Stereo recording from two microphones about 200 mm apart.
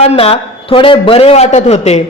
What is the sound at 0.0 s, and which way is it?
A woman's voice, 30° left (ahead or behind).